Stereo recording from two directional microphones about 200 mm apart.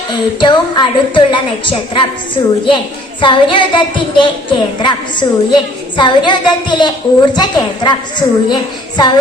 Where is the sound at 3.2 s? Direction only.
25° left (ahead or behind).